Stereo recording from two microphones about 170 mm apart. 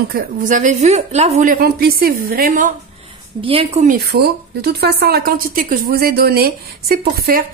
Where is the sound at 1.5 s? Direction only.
65° right (ahead or behind).